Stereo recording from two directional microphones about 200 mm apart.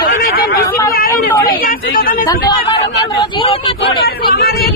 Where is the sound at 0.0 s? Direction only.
45° left (ahead or behind).